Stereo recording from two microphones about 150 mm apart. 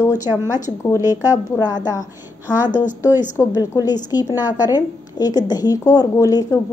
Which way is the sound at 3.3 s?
20° left (ahead or behind).